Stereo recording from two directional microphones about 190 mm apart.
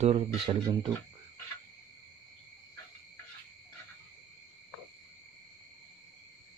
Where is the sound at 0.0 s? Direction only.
30° right (ahead or behind).